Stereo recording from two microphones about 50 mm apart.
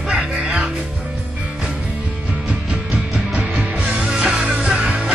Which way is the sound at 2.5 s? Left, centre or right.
Right.